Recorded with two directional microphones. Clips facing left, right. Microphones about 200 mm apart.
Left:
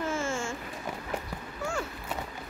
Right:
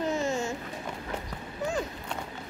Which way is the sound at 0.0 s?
20° right (ahead or behind).